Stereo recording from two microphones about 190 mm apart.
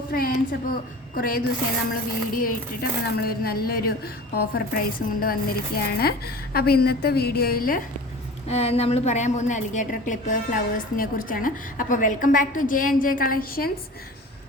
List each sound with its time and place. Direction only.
0.1 s a woman's voice: 50° left (ahead or behind)
8.4 s a woman's voice: 35° left (ahead or behind); by 13.7 s 50° left (ahead or behind)